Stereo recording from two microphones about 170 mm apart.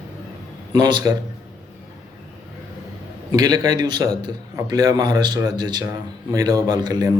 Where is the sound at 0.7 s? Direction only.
25° right (ahead or behind).